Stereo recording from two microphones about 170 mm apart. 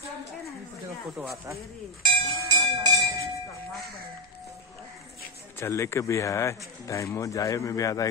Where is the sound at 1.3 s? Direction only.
20° right (ahead or behind).